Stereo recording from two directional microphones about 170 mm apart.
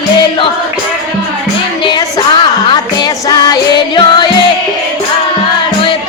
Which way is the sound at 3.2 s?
20° left (ahead or behind).